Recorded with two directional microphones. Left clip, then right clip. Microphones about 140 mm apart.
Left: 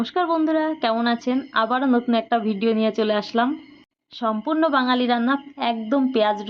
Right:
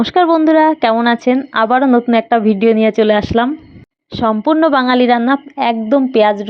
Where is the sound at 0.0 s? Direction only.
55° right (ahead or behind).